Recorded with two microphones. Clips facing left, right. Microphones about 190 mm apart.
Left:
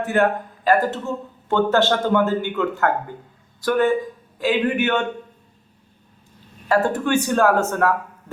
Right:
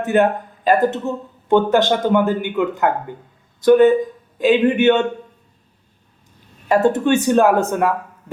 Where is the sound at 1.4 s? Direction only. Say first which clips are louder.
Right 3 dB; 15° right (ahead or behind).